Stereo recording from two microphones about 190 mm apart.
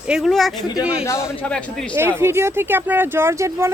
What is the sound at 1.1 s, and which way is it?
Speech, 15° left (ahead or behind).